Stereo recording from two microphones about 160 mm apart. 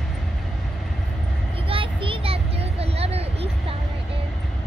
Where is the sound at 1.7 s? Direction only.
35° right (ahead or behind).